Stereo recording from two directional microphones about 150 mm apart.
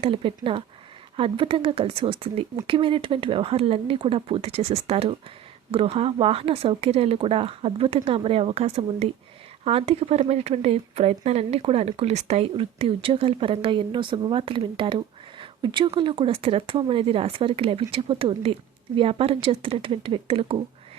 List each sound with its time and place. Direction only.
0.0 s speech: 35° right (ahead or behind)